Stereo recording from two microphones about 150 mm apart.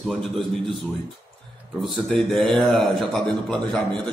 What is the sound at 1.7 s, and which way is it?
A man's voice, centre (ahead or behind).